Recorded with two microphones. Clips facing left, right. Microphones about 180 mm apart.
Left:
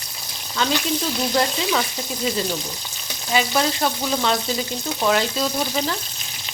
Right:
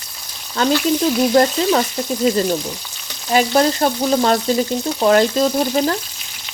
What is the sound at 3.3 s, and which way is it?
Frying, 45° right (ahead or behind).